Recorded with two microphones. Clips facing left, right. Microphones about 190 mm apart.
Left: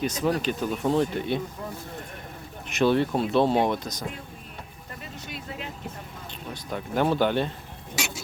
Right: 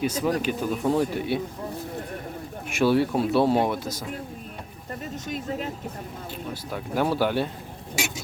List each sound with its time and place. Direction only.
0.0 s speech: 10° right (ahead or behind)
2.6 s speech: 10° right (ahead or behind)
5.1 s speech: 45° right (ahead or behind)
6.5 s speech: 5° right (ahead or behind)